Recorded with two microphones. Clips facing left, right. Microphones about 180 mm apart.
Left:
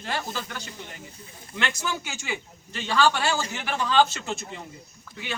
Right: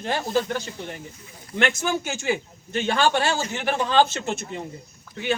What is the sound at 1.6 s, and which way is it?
Speech, 50° right (ahead or behind).